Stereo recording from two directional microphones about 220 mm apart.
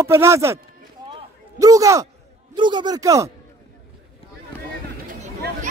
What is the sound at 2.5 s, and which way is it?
Speech, 20° right (ahead or behind).